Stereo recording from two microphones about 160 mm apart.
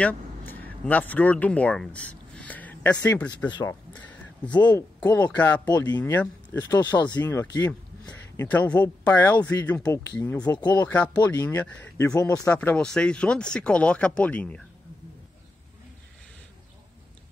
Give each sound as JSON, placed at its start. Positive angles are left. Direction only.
{"t": 0.0, "sound": "speech", "side_deg": 10}
{"t": 3.4, "sound": "speech", "side_deg": 25}
{"t": 3.9, "sound": "a sound", "side_deg": 10}
{"t": 4.6, "sound": "speech", "side_deg": 10}
{"t": 6.8, "sound": "speech", "side_deg": 25}
{"t": 7.2, "sound": "speech", "side_deg": 15}